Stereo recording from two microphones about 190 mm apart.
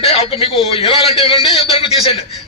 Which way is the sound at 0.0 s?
30° left (ahead or behind).